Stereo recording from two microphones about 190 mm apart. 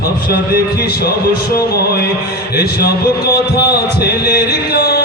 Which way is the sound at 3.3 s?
55° left (ahead or behind).